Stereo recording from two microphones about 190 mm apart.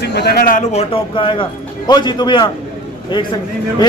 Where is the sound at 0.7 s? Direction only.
30° left (ahead or behind).